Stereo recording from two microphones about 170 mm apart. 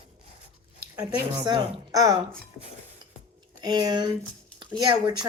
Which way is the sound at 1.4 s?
25° right (ahead or behind).